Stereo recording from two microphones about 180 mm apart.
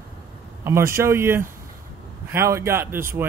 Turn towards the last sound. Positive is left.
turn(degrees=-15)  # may be behind; listen again after turning